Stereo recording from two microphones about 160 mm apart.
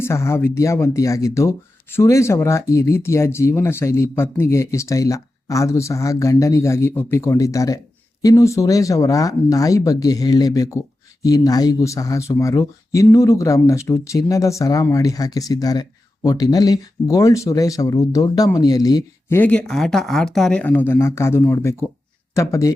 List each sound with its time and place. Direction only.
0.0 s speech: 15° left (ahead or behind)
19.4 s speech: 5° left (ahead or behind)